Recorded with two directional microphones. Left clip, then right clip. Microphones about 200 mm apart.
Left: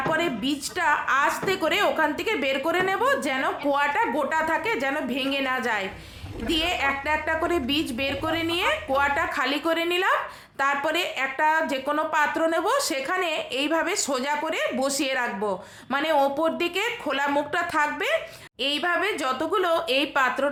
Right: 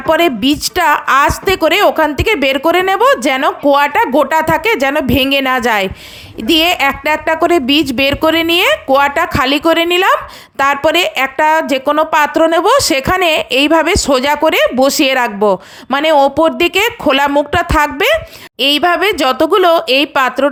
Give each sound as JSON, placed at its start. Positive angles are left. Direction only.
{"t": 0.1, "sound": "a woman's voice", "side_deg": -45}